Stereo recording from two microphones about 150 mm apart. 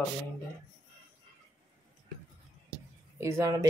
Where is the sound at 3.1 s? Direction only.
20° right (ahead or behind).